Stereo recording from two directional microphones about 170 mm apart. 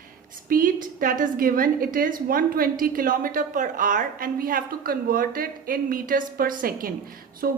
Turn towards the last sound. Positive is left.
turn(degrees=-60)  # may be behind; listen again after turning